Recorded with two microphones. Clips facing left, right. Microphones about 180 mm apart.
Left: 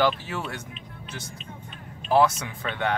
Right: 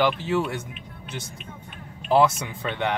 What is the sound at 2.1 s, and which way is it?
Speech, 20° right (ahead or behind).